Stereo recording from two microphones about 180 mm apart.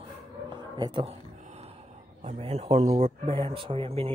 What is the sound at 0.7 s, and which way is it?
Speech, 25° right (ahead or behind).